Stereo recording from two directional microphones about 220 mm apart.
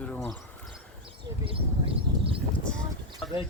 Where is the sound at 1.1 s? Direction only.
25° right (ahead or behind).